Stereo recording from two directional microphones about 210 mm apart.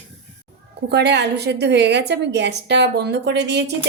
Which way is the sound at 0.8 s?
55° right (ahead or behind).